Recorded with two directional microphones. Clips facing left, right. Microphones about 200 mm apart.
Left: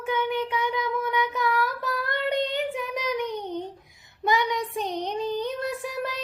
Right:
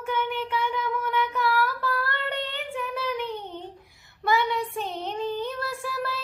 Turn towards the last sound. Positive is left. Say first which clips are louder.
# left 1 dB
turn(degrees=15)  # may be behind; listen again after turning